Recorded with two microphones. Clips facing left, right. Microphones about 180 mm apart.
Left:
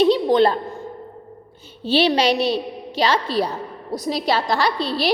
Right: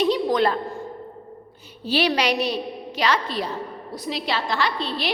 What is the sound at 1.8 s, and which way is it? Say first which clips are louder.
A woman's voice: left 4 dB; 25° left (ahead or behind).